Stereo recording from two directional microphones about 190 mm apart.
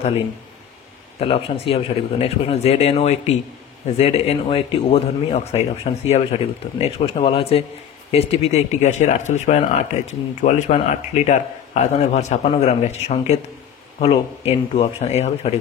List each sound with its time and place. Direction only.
1.2 s speech: 30° left (ahead or behind)